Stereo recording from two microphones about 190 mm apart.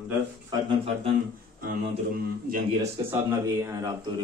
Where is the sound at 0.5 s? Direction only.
25° right (ahead or behind).